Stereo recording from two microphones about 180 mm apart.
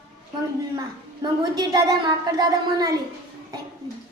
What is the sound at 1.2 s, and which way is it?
Speech, 20° right (ahead or behind).